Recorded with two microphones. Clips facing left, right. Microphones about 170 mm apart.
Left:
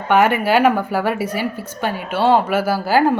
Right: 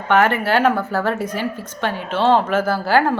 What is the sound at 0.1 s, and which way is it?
A woman's voice, 10° left (ahead or behind).